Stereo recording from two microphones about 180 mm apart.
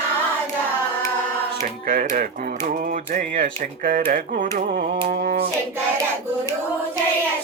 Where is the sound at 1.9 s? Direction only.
50° right (ahead or behind).